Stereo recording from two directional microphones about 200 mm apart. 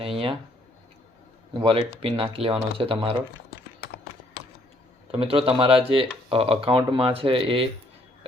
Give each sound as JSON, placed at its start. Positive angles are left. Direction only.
{"t": 0.0, "sound": "speech", "side_deg": -25}
{"t": 1.5, "sound": "speech", "side_deg": -25}
{"t": 5.1, "sound": "speech", "side_deg": -25}